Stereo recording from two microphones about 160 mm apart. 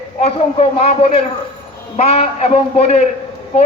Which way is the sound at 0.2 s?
40° left (ahead or behind).